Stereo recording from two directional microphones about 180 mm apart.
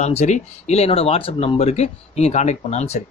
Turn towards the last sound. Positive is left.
turn(degrees=40)  # may be behind; listen again after turning